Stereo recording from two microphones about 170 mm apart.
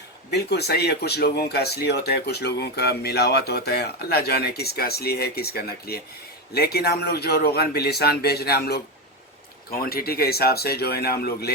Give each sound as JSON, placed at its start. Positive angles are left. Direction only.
{"t": 0.3, "sound": "speech", "side_deg": 75}